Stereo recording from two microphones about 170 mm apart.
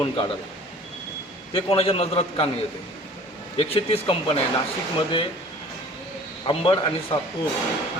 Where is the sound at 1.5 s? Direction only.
35° left (ahead or behind).